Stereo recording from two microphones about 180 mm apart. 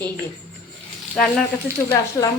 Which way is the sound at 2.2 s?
15° left (ahead or behind).